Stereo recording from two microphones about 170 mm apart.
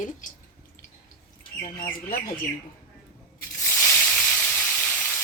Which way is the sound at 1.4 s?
30° left (ahead or behind).